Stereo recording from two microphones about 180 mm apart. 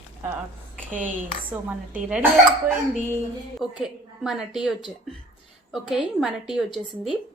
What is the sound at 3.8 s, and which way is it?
A woman's voice, 5° right (ahead or behind).